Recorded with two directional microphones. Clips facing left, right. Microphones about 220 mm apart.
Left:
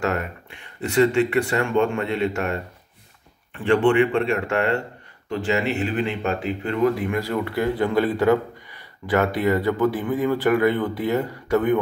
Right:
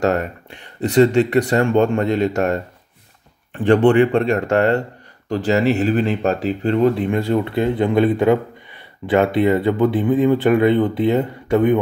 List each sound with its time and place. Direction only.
0.0 s speech: 35° right (ahead or behind)